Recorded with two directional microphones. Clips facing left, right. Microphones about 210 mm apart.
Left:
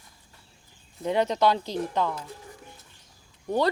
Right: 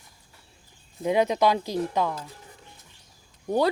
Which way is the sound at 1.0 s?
10° right (ahead or behind).